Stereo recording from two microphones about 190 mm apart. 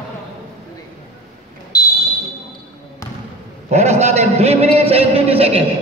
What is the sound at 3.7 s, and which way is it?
A man's voice, 35° right (ahead or behind).